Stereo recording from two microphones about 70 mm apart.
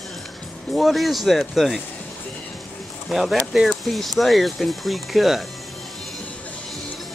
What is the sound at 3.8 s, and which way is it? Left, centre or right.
Speech, centre.